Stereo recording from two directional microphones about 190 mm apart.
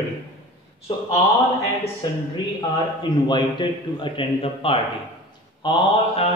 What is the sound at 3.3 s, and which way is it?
A man's voice, 25° left (ahead or behind).